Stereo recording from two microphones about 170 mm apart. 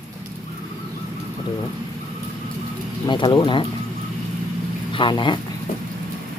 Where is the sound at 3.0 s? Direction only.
25° left (ahead or behind).